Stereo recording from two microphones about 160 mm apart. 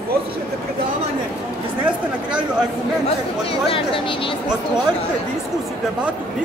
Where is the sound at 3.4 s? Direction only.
35° left (ahead or behind).